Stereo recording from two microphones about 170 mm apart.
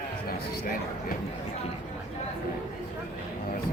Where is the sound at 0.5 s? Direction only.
60° left (ahead or behind).